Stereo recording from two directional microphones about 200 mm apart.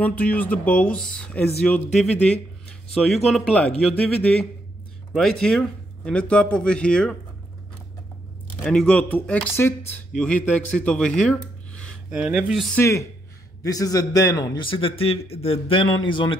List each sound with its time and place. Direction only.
0.0 s speech: 10° left (ahead or behind)
2.9 s speech: centre (ahead or behind)
8.6 s speech: 5° left (ahead or behind)
12.7 s a man's voice: 15° left (ahead or behind)